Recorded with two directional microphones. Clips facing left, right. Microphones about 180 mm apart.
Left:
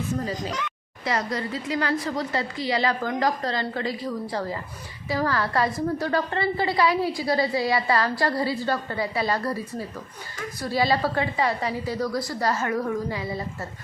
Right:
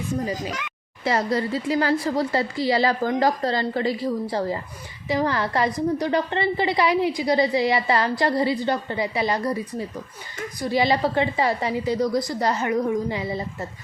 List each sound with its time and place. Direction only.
0.3 s speech: 10° right (ahead or behind)
1.0 s a woman's voice: 30° right (ahead or behind)
10.6 s a woman's voice: 20° right (ahead or behind)